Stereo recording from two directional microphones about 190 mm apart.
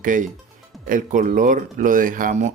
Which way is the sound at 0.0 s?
45° right (ahead or behind).